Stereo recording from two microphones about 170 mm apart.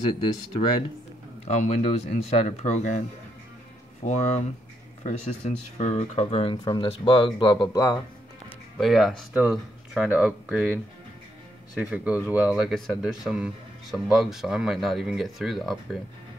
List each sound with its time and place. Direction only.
1.5 s speech: 45° left (ahead or behind)
4.0 s speech: 40° left (ahead or behind); by 8.0 s 20° left (ahead or behind)
8.5 s speech: centre (ahead or behind)